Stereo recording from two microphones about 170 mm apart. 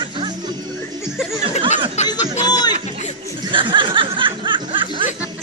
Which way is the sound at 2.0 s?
40° left (ahead or behind).